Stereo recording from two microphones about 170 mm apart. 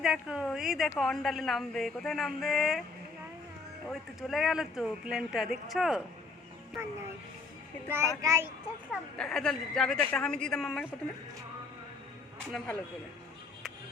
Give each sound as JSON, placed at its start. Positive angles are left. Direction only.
{"t": 0.0, "sound": "a woman's voice", "side_deg": -5}
{"t": 3.8, "sound": "a woman's voice", "side_deg": 0}
{"t": 8.2, "sound": "a child's voice", "side_deg": -20}
{"t": 8.9, "sound": "a woman's voice", "side_deg": 5}
{"t": 12.5, "sound": "a woman's voice", "side_deg": 5}